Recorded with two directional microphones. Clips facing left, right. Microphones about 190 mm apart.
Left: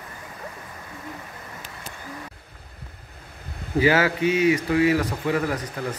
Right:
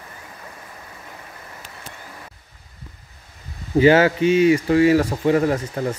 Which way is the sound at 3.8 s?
25° right (ahead or behind).